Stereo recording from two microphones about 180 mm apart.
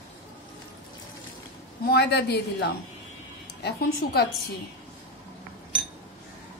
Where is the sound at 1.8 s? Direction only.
65° left (ahead or behind).